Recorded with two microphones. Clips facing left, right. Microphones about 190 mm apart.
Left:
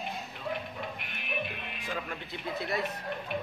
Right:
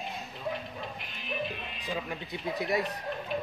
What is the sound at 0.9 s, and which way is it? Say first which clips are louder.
Music: right 1 dB; 60° left (ahead or behind).